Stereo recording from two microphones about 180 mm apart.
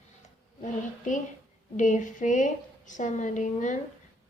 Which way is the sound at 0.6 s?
45° left (ahead or behind).